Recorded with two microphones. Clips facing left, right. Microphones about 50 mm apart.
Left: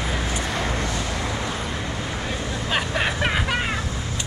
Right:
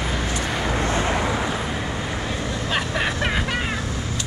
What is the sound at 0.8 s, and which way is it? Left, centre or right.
Vehicle, right.